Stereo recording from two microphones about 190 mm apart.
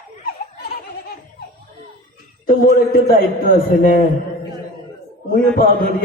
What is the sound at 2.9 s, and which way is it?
A man's voice, 50° left (ahead or behind).